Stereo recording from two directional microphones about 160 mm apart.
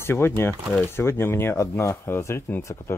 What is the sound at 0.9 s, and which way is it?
Speech, 15° left (ahead or behind).